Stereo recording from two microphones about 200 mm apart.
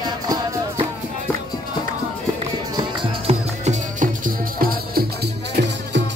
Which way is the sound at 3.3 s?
35° right (ahead or behind).